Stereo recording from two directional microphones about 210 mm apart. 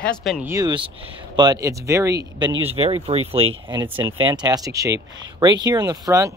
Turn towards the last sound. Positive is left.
turn(degrees=-15)  # may be behind; listen again after turning